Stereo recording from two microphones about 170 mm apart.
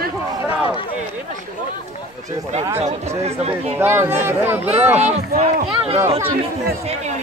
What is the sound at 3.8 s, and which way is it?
Speech, 15° right (ahead or behind).